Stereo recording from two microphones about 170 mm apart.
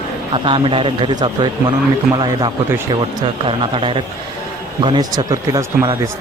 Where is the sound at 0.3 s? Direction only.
30° right (ahead or behind).